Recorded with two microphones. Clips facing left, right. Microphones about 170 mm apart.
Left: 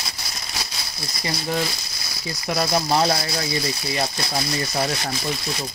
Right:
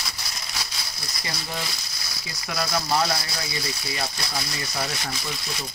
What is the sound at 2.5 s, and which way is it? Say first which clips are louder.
Speech: left 4 dB; 25° left (ahead or behind).